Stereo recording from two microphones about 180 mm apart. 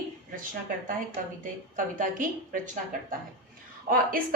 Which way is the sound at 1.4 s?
45° right (ahead or behind).